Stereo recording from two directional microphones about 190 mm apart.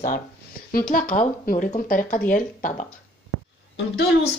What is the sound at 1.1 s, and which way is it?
Speech, 45° left (ahead or behind).